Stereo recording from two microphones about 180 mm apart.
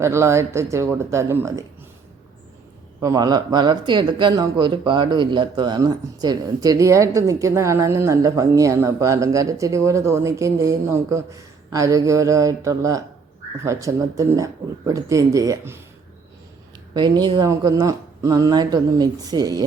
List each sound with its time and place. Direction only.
0.0 s speech: 15° right (ahead or behind)
3.0 s speech: 20° right (ahead or behind)
16.9 s speech: 25° right (ahead or behind)